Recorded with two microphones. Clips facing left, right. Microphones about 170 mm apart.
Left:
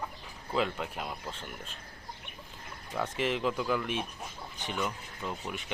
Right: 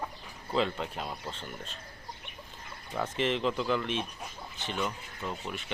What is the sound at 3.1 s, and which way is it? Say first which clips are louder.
Speech: right 2 dB; 10° left (ahead or behind).